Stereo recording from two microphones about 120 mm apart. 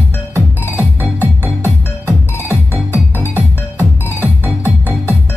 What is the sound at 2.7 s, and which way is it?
Music, 20° left (ahead or behind).